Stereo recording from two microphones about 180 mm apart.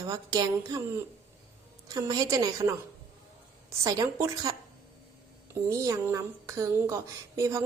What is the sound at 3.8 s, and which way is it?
Speech, 20° right (ahead or behind).